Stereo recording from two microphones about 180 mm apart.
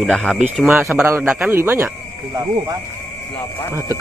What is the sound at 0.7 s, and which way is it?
A man's voice, 10° right (ahead or behind).